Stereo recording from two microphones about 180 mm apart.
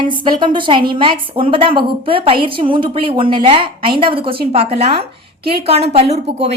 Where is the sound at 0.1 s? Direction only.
25° right (ahead or behind).